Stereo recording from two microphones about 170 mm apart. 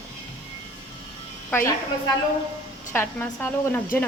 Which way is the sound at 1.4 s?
10° left (ahead or behind).